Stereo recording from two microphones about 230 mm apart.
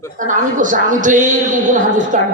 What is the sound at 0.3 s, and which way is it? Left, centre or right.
Speech, right.